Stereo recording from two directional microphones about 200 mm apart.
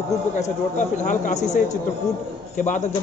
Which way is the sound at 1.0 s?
40° left (ahead or behind).